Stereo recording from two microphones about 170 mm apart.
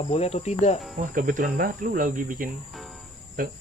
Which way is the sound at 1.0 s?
50° right (ahead or behind).